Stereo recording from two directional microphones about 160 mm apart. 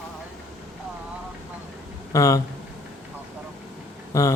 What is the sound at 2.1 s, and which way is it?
Speech, 20° left (ahead or behind).